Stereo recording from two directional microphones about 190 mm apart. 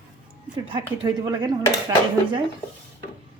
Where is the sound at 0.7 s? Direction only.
25° right (ahead or behind).